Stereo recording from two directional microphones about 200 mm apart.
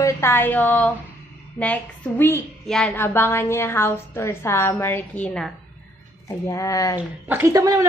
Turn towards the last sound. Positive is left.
turn(degrees=-15)  # may be behind; listen again after turning